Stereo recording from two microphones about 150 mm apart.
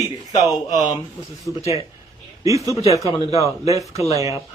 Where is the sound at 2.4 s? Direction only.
20° right (ahead or behind).